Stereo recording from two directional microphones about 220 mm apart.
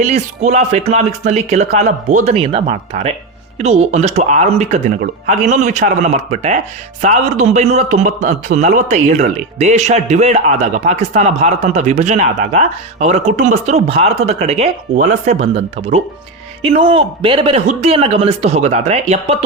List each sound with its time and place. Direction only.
0.0 s a man's voice: 30° right (ahead or behind)